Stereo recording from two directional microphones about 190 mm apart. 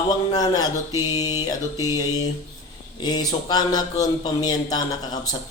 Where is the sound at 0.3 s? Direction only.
20° left (ahead or behind).